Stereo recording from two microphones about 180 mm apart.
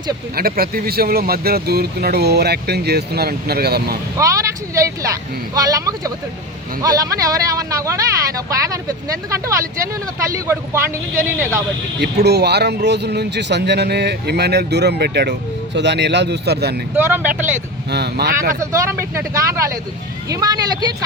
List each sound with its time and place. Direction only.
0.3 s speech: 55° right (ahead or behind)
4.2 s speech: 15° right (ahead or behind)
12.2 s speech: 65° right (ahead or behind)
16.9 s speech: 10° right (ahead or behind)
17.9 s speech: 65° right (ahead or behind)
18.6 s speech: 15° right (ahead or behind)